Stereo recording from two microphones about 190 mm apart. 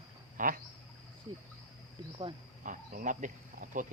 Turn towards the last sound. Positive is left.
turn(degrees=-45)  # may be behind; listen again after turning